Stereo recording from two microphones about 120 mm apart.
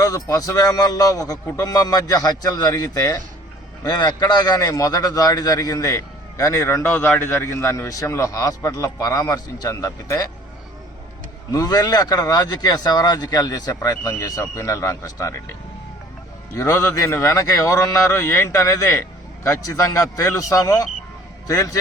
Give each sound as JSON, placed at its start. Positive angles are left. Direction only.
{"t": 0.0, "sound": "a man's voice", "side_deg": 30}
{"t": 11.5, "sound": "speech", "side_deg": 30}
{"t": 16.6, "sound": "a man's voice", "side_deg": 25}